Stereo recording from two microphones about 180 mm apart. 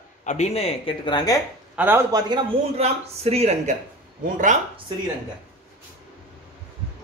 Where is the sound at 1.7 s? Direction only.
10° right (ahead or behind).